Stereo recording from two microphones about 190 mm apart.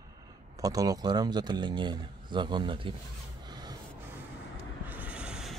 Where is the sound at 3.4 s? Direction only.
20° right (ahead or behind).